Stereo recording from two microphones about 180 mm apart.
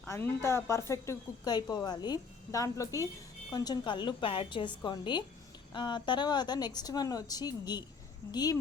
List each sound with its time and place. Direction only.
0.1 s a woman's voice: 15° left (ahead or behind)